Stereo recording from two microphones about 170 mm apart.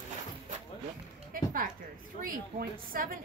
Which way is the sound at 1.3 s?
55° right (ahead or behind).